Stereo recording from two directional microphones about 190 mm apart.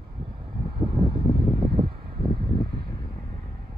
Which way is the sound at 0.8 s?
25° right (ahead or behind).